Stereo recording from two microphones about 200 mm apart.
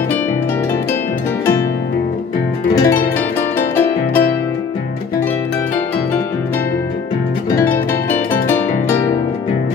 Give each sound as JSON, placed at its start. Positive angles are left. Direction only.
{"t": 2.7, "sound": "music", "side_deg": 15}
{"t": 3.5, "sound": "harp", "side_deg": 10}
{"t": 7.5, "sound": "music", "side_deg": 10}